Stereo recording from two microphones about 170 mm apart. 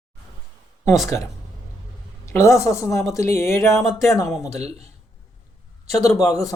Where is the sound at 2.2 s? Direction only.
15° left (ahead or behind).